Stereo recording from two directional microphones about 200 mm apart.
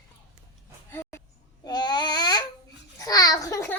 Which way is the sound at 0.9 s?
10° left (ahead or behind).